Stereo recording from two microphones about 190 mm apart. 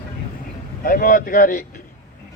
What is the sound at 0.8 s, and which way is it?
Speech, 45° left (ahead or behind).